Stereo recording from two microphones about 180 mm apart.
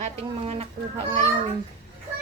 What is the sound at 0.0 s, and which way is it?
Speech, 35° right (ahead or behind).